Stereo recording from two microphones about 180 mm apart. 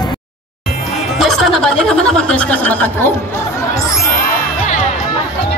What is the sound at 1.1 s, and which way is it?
Speech, centre (ahead or behind).